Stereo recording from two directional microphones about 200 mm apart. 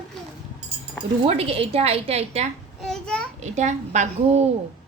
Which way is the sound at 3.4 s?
35° right (ahead or behind).